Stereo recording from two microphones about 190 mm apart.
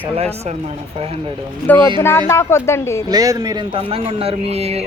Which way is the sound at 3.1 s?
20° right (ahead or behind).